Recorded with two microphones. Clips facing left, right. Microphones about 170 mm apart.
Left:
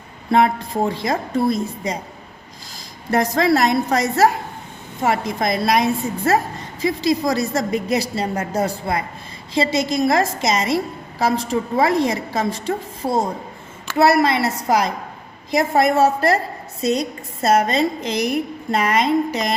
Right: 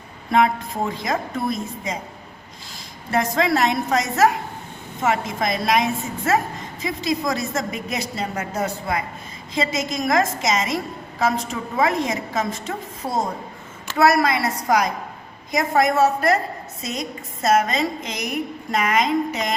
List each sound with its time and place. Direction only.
0.3 s a woman's voice: 35° left (ahead or behind)
3.1 s a woman's voice: 40° left (ahead or behind)